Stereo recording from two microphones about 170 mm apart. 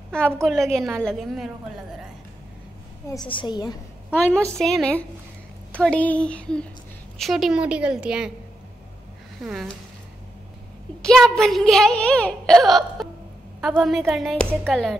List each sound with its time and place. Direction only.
0.1 s speech: 5° left (ahead or behind)
3.3 s a woman's voice: 25° left (ahead or behind)
4.6 s a woman's voice: centre (ahead or behind)
9.4 s speech: centre (ahead or behind)
11.0 s speech: 5° left (ahead or behind)